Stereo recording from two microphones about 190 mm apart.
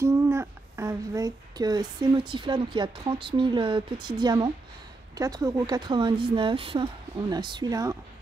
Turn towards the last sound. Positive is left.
turn(degrees=-20)  # may be behind; listen again after turning